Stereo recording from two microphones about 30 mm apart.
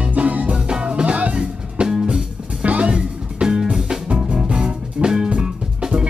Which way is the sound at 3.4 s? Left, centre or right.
Right.